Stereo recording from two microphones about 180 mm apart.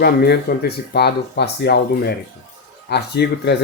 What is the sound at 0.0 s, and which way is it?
Speech, 60° left (ahead or behind).